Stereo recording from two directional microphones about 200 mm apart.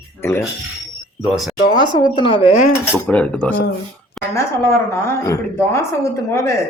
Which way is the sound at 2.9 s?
5° left (ahead or behind).